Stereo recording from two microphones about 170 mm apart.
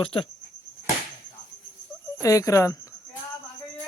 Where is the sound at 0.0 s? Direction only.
30° left (ahead or behind).